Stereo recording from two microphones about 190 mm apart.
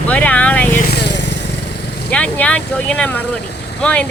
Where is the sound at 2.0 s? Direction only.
5° left (ahead or behind).